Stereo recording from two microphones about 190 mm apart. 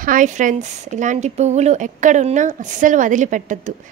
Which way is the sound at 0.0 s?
45° right (ahead or behind).